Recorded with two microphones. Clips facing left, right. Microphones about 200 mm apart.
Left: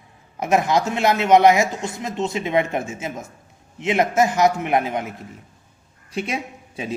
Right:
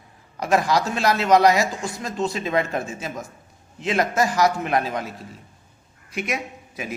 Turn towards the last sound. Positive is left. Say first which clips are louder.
# left 2 dB
turn(degrees=30)  # may be behind; listen again after turning